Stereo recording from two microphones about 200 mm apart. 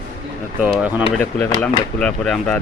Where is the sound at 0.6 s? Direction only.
5° right (ahead or behind).